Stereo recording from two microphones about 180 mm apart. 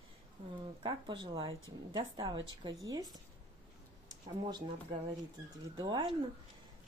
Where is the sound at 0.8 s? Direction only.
25° right (ahead or behind).